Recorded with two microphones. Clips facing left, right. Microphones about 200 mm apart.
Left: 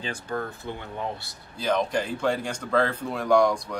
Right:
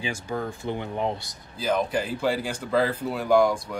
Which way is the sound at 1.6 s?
5° right (ahead or behind).